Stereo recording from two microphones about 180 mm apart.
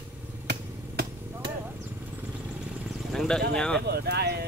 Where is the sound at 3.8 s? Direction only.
65° right (ahead or behind).